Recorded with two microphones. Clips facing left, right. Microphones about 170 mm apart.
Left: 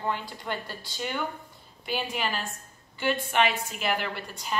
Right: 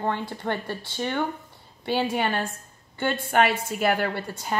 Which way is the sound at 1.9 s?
70° right (ahead or behind).